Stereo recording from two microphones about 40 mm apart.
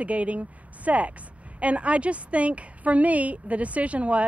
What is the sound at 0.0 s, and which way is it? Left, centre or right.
Speech, right.